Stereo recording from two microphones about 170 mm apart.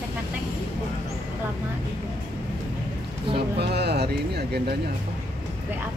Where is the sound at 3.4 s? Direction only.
70° right (ahead or behind).